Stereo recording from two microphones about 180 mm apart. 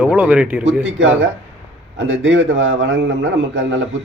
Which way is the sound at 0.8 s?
90° right.